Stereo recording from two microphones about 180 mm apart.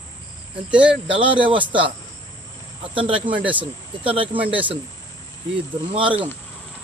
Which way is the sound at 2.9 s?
30° right (ahead or behind).